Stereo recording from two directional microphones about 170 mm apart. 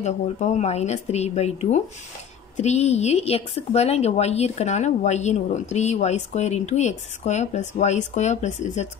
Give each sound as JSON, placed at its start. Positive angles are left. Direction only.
{"t": 0.0, "sound": "speech", "side_deg": 40}